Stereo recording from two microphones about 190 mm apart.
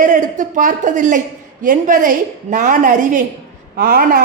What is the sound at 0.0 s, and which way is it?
Speech, 45° right (ahead or behind).